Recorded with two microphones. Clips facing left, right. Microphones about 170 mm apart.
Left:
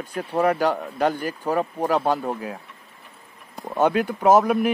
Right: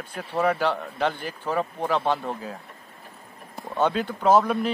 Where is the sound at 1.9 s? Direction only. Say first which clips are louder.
Left 3 dB; 5° left (ahead or behind).